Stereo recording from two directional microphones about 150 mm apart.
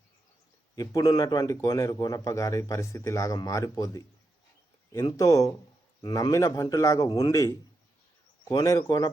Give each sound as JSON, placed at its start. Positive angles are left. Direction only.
{"t": 0.8, "sound": "a man's voice", "side_deg": 25}